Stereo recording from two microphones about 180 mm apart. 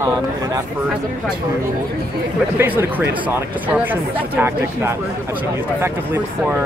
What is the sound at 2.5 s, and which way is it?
Speech, 10° right (ahead or behind).